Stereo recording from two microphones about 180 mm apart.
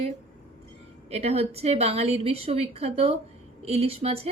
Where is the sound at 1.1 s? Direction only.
35° right (ahead or behind).